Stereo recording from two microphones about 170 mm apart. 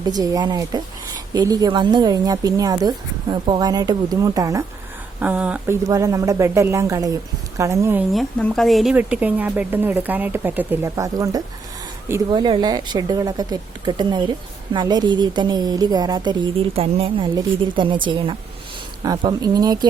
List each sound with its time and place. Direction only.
0.1 s speech: 25° right (ahead or behind)
5.2 s a woman's voice: 10° right (ahead or behind)
8.1 s a woman's voice: 5° left (ahead or behind); by 19.9 s 25° right (ahead or behind)